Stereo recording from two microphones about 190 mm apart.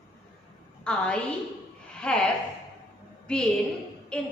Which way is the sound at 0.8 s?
5° left (ahead or behind).